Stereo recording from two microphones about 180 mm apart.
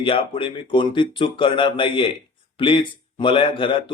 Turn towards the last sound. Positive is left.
turn(degrees=30)  # may be behind; listen again after turning